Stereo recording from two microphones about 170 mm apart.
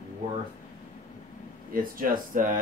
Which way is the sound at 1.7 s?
55° right (ahead or behind).